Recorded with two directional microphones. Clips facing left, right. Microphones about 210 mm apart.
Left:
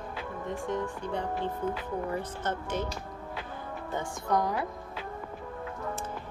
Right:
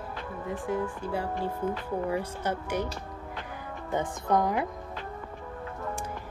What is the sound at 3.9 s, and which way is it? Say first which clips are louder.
Speech: right 3 dB; 20° right (ahead or behind).